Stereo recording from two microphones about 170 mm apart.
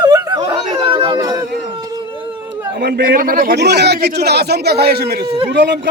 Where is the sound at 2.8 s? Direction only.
65° right (ahead or behind).